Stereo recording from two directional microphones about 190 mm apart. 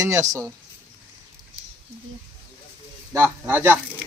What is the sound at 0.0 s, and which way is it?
Speech, 15° right (ahead or behind).